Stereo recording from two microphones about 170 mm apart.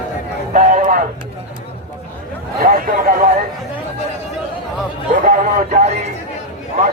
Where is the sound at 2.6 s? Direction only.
55° right (ahead or behind).